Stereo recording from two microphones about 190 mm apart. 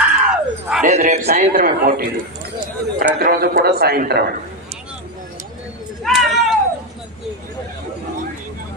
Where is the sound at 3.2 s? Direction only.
55° right (ahead or behind).